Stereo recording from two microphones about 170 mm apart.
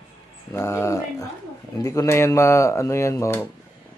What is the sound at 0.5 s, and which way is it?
Speech, 15° left (ahead or behind).